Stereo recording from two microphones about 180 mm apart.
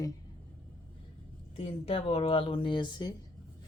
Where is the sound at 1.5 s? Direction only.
30° left (ahead or behind).